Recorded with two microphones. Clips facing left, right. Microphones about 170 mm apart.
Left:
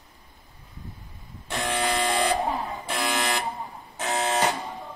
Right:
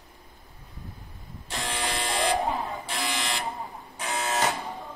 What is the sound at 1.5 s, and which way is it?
Buzzer, 60° left (ahead or behind).